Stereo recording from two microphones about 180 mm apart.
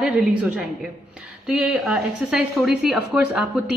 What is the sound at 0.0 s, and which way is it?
A man's voice, 5° right (ahead or behind).